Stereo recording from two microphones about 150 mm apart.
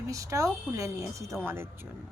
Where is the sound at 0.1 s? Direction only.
20° right (ahead or behind).